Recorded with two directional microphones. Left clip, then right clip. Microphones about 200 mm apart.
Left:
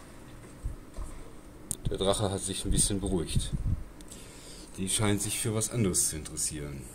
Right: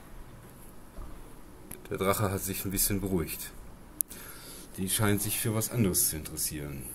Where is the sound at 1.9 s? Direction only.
20° right (ahead or behind).